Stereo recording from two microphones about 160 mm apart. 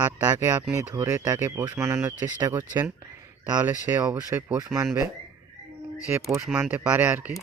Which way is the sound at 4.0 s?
25° right (ahead or behind).